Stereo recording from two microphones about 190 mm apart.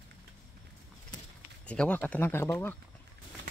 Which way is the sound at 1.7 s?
5° left (ahead or behind).